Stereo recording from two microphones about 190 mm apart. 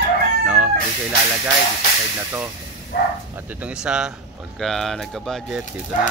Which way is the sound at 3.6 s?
5° right (ahead or behind).